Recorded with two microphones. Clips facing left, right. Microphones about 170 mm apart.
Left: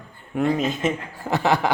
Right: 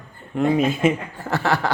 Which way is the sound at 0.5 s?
10° right (ahead or behind).